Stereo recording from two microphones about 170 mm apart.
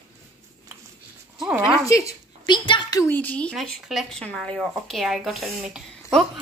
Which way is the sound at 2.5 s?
25° left (ahead or behind).